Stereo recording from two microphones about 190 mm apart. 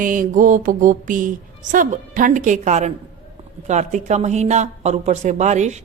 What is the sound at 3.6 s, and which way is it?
Speech, 40° right (ahead or behind).